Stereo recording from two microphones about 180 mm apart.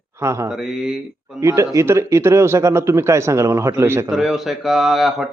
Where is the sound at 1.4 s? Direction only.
15° right (ahead or behind).